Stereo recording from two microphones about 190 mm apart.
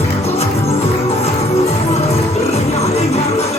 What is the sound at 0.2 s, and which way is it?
Music, 30° left (ahead or behind).